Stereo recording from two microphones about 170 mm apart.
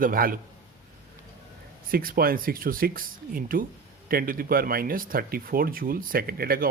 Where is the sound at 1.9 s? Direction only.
60° right (ahead or behind).